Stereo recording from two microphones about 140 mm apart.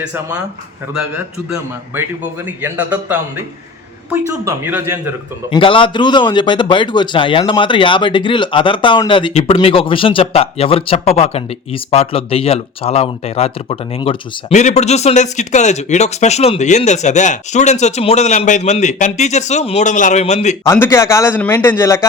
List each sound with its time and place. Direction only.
0.0 s speech: 10° right (ahead or behind)
1.9 s speech: 10° right (ahead or behind)
4.3 s speech: 20° right (ahead or behind)
5.5 s a man's voice: 40° left (ahead or behind)
9.3 s speech: 50° left (ahead or behind)
14.6 s speech: 55° left (ahead or behind)
20.7 s a man's voice: 15° left (ahead or behind)